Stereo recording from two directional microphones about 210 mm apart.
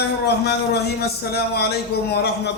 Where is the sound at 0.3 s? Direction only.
50° left (ahead or behind).